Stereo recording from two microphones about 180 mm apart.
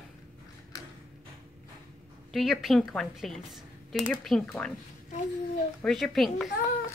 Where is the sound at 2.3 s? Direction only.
Centre (ahead or behind).